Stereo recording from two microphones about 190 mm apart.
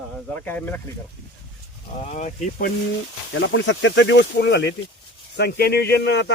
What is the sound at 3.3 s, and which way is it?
Speech, 75° left (ahead or behind).